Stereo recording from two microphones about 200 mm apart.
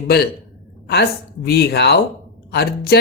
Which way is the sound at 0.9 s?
55° left (ahead or behind).